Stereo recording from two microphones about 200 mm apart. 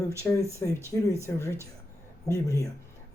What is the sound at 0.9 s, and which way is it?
Speech, 15° left (ahead or behind).